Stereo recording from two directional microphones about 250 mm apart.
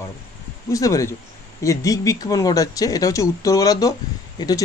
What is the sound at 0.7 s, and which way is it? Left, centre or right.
Speech, centre.